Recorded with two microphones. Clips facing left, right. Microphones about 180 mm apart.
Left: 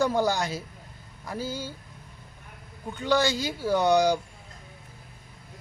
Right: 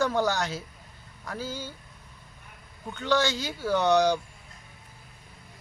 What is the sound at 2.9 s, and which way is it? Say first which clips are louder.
A man's voice: left 1 dB; 10° left (ahead or behind).